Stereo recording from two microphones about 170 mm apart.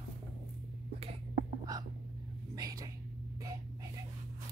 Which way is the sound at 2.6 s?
20° right (ahead or behind).